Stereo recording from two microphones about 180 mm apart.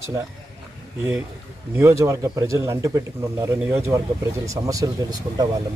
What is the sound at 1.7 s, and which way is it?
Speech, 15° right (ahead or behind).